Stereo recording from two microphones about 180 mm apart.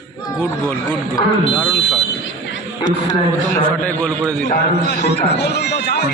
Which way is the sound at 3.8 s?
5° left (ahead or behind).